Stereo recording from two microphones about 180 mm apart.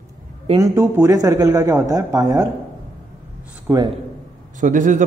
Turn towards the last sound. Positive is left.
turn(degrees=-45)  # may be behind; listen again after turning